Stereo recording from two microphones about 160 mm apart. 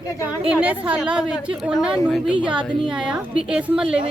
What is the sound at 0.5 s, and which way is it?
A woman's voice, 10° right (ahead or behind).